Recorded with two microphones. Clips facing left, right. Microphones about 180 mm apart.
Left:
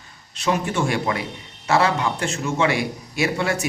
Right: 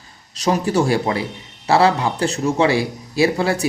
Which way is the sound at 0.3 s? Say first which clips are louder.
Right 5 dB; 35° right (ahead or behind).